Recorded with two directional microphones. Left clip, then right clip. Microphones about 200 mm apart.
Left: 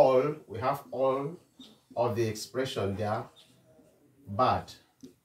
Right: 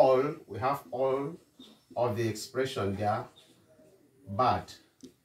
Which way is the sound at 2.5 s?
15° left (ahead or behind).